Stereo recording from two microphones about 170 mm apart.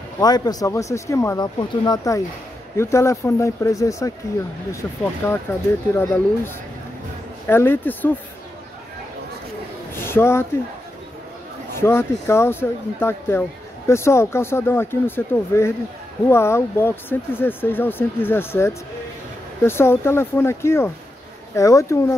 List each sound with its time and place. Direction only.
0.2 s speech: 20° left (ahead or behind)
5.2 s speech: 15° left (ahead or behind)
9.9 s speech: 15° left (ahead or behind)
11.8 s speech: 15° left (ahead or behind)